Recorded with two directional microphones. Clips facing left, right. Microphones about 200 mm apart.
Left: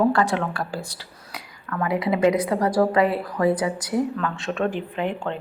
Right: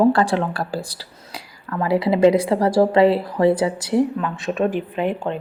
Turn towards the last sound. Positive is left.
turn(degrees=-15)  # may be behind; listen again after turning